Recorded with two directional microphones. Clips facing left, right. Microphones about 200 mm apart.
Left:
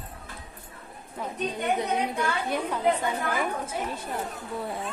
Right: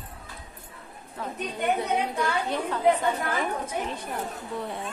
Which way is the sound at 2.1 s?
15° left (ahead or behind).